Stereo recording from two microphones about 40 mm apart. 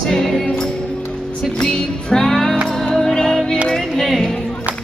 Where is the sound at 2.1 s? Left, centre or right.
Centre.